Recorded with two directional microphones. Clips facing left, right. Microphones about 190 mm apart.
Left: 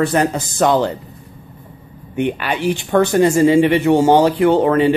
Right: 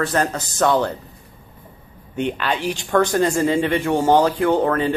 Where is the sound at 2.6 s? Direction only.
60° left (ahead or behind).